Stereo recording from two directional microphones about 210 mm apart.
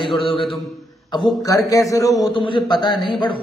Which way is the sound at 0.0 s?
25° left (ahead or behind).